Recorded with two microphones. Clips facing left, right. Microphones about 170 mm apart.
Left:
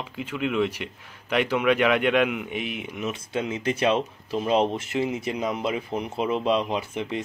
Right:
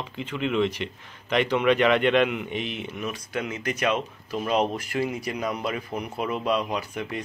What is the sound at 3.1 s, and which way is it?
Speech, 25° left (ahead or behind).